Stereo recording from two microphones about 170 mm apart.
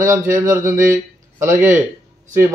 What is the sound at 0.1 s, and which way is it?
A man's voice, 15° right (ahead or behind).